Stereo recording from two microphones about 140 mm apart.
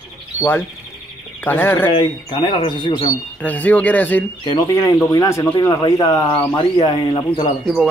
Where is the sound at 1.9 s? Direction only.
35° left (ahead or behind).